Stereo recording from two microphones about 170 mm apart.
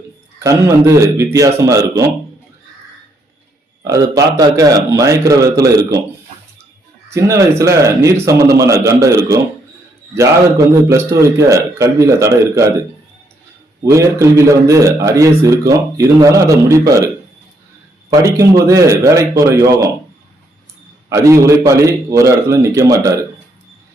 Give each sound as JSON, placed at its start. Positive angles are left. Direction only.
{"t": 0.3, "sound": "a man's voice", "side_deg": -20}
{"t": 3.8, "sound": "speech", "side_deg": -20}
{"t": 7.1, "sound": "a man's voice", "side_deg": -15}
{"t": 10.9, "sound": "a man's voice", "side_deg": -15}
{"t": 13.9, "sound": "a man's voice", "side_deg": -15}
{"t": 18.1, "sound": "speech", "side_deg": -20}
{"t": 21.1, "sound": "a man's voice", "side_deg": -15}